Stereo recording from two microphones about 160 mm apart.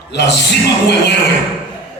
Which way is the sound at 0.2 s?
90° left.